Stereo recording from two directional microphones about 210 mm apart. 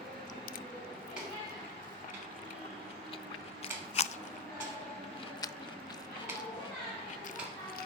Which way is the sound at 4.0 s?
30° left (ahead or behind).